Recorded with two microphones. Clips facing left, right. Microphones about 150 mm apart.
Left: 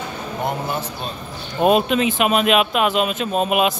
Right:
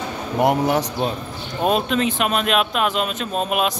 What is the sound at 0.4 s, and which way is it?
Speech, 75° right (ahead or behind).